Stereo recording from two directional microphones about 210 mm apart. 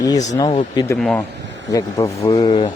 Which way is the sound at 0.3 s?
20° left (ahead or behind).